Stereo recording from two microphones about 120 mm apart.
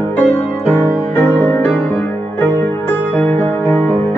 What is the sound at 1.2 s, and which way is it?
Music, 20° left (ahead or behind).